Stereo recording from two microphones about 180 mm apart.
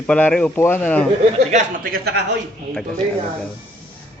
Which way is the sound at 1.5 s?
45° right (ahead or behind).